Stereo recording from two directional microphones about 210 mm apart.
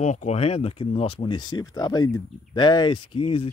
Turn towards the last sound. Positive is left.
turn(degrees=25)  # may be behind; listen again after turning